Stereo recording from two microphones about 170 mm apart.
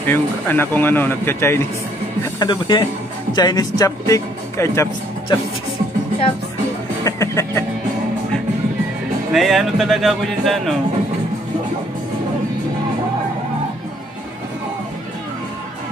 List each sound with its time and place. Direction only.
0.0 s speech: 10° left (ahead or behind)
2.3 s speech: 25° left (ahead or behind)
7.1 s music: 15° left (ahead or behind)
9.3 s speech: centre (ahead or behind)